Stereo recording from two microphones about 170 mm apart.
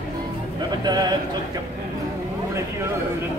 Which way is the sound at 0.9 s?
25° right (ahead or behind).